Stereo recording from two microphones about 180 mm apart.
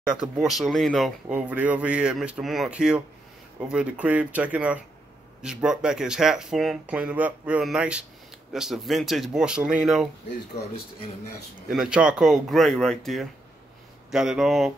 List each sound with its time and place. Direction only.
0.1 s speech: centre (ahead or behind)
10.6 s speech: 35° left (ahead or behind)
11.7 s speech: 5° right (ahead or behind)